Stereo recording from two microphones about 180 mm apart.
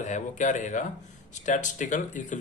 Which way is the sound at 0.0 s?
45° left (ahead or behind).